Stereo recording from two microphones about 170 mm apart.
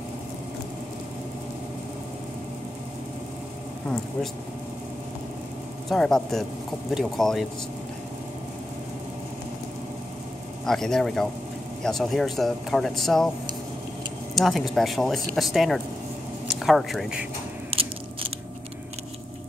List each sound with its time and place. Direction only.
5.9 s a man's voice: 5° left (ahead or behind)
10.6 s a man's voice: 5° left (ahead or behind)
14.3 s a man's voice: centre (ahead or behind)
17.6 s scissors: 35° right (ahead or behind)